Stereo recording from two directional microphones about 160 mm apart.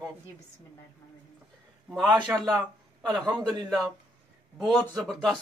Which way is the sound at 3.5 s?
Centre (ahead or behind).